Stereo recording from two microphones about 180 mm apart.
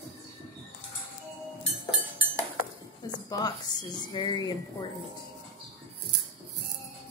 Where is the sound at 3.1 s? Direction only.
20° left (ahead or behind).